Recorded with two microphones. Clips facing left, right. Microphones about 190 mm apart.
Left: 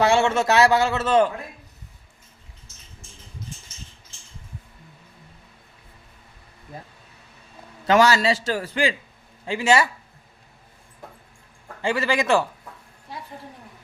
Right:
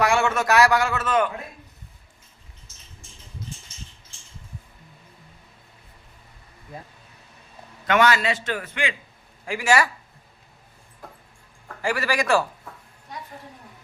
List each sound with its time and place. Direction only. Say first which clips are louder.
0.0 s a man's voice: left 3 dB; 25° left (ahead or behind)
7.9 s a man's voice: left 3 dB; 30° left (ahead or behind)
11.8 s a man's voice: left 2 dB; 25° left (ahead or behind)